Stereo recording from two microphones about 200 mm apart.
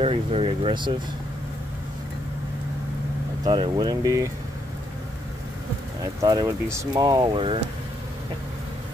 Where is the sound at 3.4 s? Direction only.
20° right (ahead or behind).